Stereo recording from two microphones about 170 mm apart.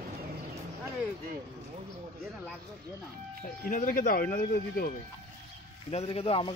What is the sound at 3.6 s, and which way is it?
Speech, 55° left (ahead or behind).